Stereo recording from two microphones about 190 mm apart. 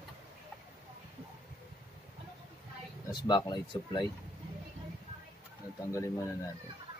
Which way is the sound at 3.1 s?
25° left (ahead or behind).